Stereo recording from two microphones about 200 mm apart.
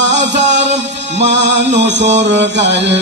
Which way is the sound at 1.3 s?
60° right (ahead or behind).